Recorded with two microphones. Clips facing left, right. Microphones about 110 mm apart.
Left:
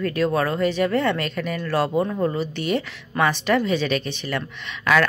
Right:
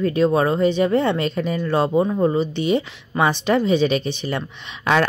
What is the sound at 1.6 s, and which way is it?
Speech, 15° right (ahead or behind).